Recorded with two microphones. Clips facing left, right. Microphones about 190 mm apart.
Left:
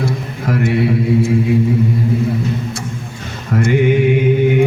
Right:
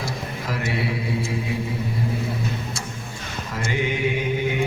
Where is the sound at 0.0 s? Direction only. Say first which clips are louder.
Left 9 dB; 55° left (ahead or behind).